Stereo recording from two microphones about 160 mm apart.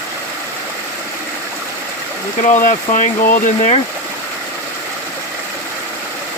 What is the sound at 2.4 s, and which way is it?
Speech, 50° left (ahead or behind).